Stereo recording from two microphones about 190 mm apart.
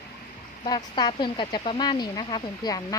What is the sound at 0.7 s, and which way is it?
Speech, 20° left (ahead or behind).